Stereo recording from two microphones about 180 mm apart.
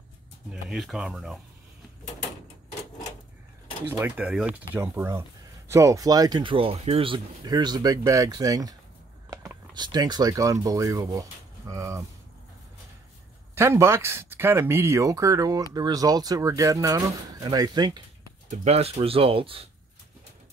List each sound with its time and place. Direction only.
0.5 s speech: centre (ahead or behind)
3.9 s speech: 10° right (ahead or behind)
13.6 s speech: 15° right (ahead or behind)
18.5 s speech: 40° right (ahead or behind)